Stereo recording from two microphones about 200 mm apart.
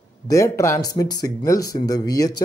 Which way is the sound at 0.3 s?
15° left (ahead or behind).